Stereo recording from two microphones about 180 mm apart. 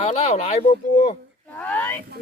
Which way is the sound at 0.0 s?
35° left (ahead or behind).